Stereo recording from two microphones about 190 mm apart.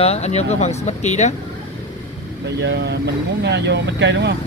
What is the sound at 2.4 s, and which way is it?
Speech, 65° right (ahead or behind).